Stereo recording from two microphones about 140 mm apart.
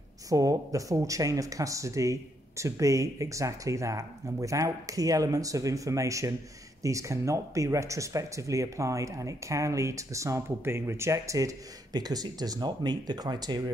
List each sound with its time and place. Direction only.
0.3 s speech: 25° right (ahead or behind)